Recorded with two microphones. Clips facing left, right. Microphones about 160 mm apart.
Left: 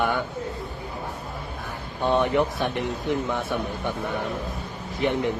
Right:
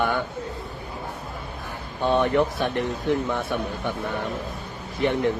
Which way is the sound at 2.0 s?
15° left (ahead or behind).